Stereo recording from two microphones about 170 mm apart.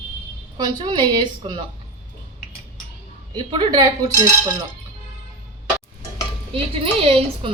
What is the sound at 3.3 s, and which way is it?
Speech, 30° right (ahead or behind).